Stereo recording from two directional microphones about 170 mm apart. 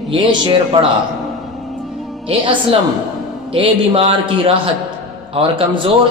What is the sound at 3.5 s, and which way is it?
A man's voice, 35° right (ahead or behind).